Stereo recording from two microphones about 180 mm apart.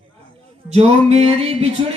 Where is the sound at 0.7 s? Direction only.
35° right (ahead or behind).